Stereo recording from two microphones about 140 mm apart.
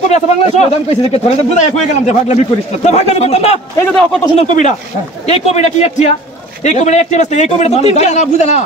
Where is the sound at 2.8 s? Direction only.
50° left (ahead or behind).